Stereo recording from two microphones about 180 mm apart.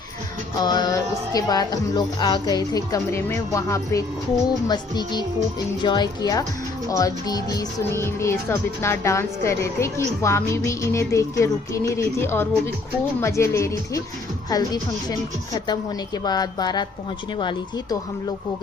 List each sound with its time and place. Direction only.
0.6 s speech: 20° left (ahead or behind)